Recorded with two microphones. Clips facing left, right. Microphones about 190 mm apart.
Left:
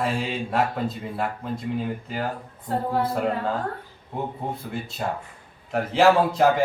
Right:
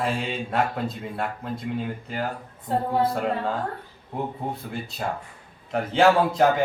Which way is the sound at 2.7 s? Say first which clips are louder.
Right 1 dB; 25° right (ahead or behind).